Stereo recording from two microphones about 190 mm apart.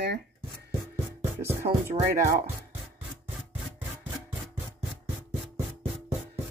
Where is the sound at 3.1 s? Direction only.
Centre (ahead or behind).